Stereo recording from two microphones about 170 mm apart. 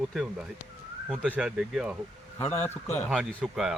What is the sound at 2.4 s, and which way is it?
Speech, 10° left (ahead or behind).